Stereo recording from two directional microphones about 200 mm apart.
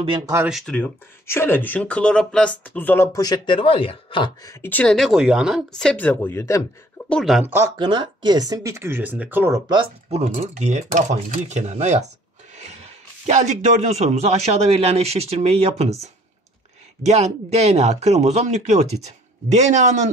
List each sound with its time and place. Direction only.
0.5 s speech: centre (ahead or behind)
7.1 s speech: centre (ahead or behind)
7.5 s speech: 20° right (ahead or behind)
9.7 s a man's voice: 30° right (ahead or behind)